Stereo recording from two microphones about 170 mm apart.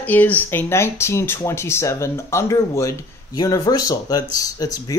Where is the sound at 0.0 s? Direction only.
10° left (ahead or behind).